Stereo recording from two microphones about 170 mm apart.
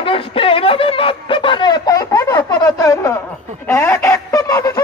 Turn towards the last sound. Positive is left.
turn(degrees=20)  # may be behind; listen again after turning